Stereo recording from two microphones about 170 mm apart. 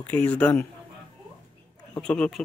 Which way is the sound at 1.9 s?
5° left (ahead or behind).